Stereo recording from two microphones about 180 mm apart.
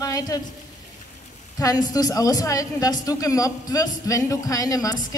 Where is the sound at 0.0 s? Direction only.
20° left (ahead or behind).